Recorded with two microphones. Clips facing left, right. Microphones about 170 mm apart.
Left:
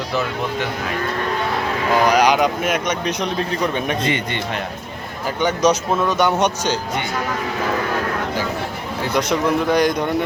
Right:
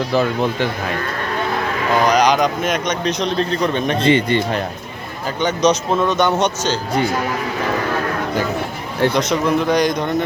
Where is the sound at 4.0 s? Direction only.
30° right (ahead or behind).